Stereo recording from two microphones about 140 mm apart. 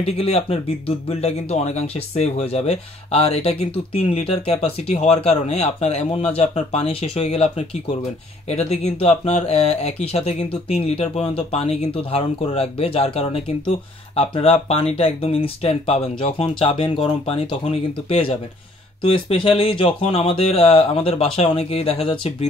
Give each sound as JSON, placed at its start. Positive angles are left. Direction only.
{"t": 0.0, "sound": "speech", "side_deg": 45}